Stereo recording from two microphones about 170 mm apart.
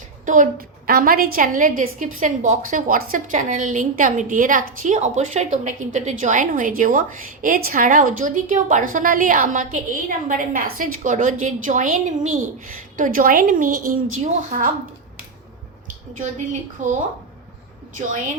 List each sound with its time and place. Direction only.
0.3 s a woman's voice: 50° right (ahead or behind)
16.8 s a woman's voice: 45° right (ahead or behind)